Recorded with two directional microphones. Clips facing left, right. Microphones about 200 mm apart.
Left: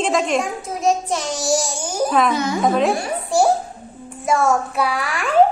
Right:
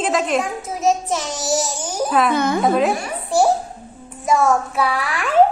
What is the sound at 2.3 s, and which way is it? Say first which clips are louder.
Speech: right 2 dB; 55° right (ahead or behind).